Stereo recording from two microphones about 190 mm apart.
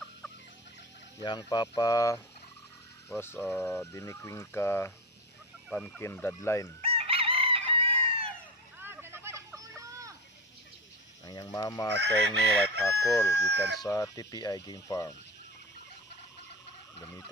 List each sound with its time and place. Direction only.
1.2 s speech: 20° left (ahead or behind)
6.8 s chicken: 30° right (ahead or behind)
8.8 s vehicle: 10° right (ahead or behind)
11.2 s speech: 20° left (ahead or behind)
11.9 s chicken: 65° right (ahead or behind)
12.8 s speech: 15° left (ahead or behind)